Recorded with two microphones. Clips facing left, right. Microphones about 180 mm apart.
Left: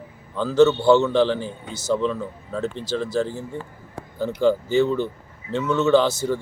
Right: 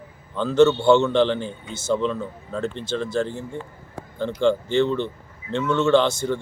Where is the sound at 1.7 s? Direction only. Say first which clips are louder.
Even; 25° right (ahead or behind).